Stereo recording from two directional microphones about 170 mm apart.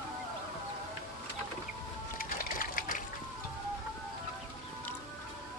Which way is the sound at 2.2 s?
55° left (ahead or behind).